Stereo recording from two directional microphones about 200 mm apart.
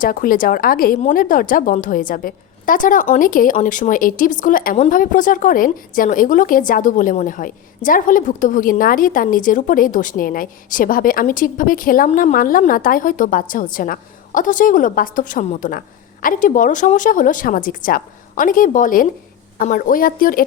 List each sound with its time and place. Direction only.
0.0 s a woman's voice: 45° left (ahead or behind)